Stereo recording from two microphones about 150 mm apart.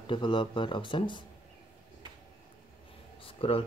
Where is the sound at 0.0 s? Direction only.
35° left (ahead or behind).